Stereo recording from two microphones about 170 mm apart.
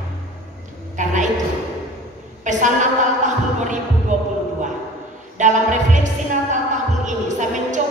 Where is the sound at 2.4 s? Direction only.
45° right (ahead or behind).